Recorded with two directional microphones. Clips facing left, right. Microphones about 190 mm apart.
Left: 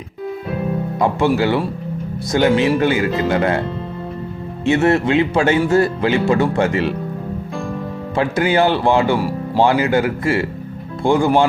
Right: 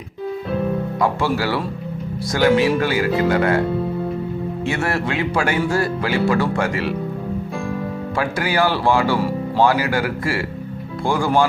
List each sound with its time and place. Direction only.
0.9 s speech: 20° left (ahead or behind)
4.6 s speech: 20° left (ahead or behind)
8.1 s speech: 25° left (ahead or behind)